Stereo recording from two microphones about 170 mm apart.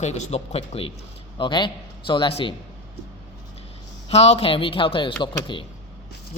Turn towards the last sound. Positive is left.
turn(degrees=30)  # may be behind; listen again after turning